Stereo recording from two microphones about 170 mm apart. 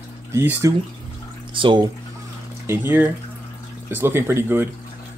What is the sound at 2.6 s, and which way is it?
Speech, 10° right (ahead or behind).